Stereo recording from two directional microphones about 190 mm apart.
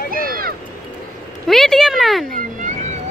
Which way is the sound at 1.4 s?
Centre (ahead or behind).